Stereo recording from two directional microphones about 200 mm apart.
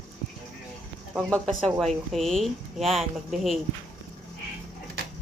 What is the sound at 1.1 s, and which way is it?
Speech, centre (ahead or behind).